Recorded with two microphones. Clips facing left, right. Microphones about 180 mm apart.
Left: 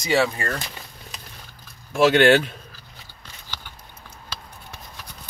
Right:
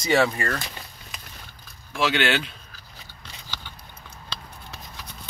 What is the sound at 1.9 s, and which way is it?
Speech, 45° left (ahead or behind).